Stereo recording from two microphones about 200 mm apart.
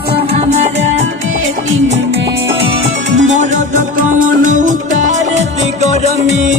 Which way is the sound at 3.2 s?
35° right (ahead or behind).